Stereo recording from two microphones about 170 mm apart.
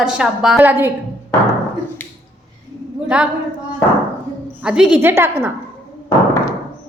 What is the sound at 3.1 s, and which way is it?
Speech, 5° right (ahead or behind).